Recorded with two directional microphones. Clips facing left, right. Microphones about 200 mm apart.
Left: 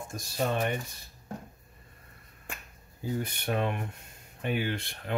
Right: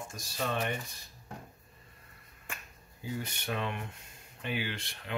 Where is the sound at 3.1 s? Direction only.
50° left (ahead or behind).